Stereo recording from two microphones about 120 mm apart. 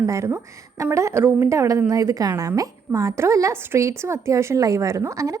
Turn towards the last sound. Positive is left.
turn(degrees=-25)  # may be behind; listen again after turning